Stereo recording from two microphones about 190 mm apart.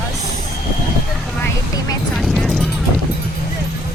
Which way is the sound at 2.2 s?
Centre (ahead or behind).